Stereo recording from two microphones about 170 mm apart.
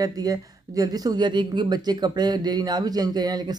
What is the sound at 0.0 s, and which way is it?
Speech, 20° right (ahead or behind).